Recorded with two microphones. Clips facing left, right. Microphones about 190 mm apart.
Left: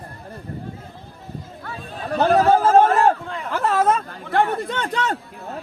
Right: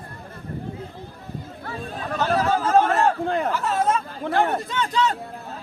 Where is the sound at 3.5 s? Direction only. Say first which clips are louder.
Left 3 dB; 60° left (ahead or behind).